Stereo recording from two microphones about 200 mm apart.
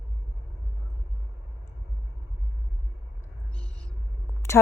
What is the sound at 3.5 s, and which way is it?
Owl, 5° left (ahead or behind).